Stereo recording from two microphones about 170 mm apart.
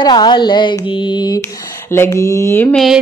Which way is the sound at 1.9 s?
15° left (ahead or behind).